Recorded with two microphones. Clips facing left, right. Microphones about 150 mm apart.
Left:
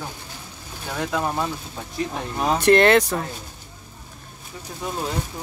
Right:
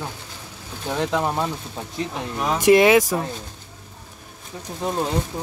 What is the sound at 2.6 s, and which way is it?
Speech, 10° right (ahead or behind).